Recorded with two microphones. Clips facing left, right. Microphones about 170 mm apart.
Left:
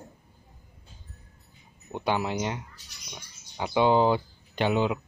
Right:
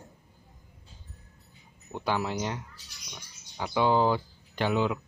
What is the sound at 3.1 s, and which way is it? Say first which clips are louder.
Bird: left 3 dB; 20° left (ahead or behind).